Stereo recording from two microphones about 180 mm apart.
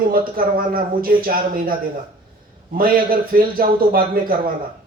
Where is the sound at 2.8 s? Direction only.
55° right (ahead or behind).